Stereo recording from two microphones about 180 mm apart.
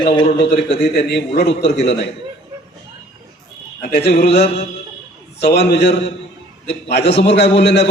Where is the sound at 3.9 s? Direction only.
70° left (ahead or behind).